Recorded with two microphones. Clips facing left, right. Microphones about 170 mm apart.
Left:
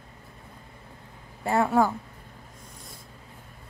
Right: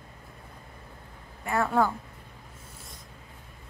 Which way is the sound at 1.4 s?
25° left (ahead or behind).